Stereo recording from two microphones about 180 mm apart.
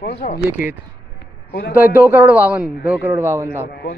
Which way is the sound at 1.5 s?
60° left (ahead or behind).